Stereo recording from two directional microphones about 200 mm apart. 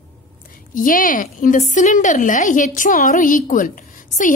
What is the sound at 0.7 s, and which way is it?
A woman's voice, 40° left (ahead or behind).